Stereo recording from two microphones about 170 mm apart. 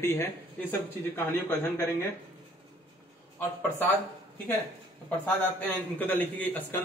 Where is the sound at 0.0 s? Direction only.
15° left (ahead or behind).